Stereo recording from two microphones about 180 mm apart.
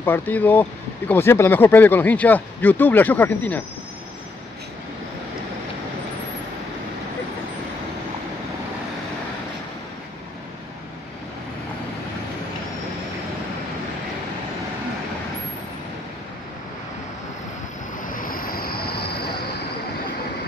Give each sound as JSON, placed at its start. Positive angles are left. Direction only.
{"t": 0.0, "sound": "speech", "side_deg": 10}
{"t": 18.0, "sound": "vehicle", "side_deg": 50}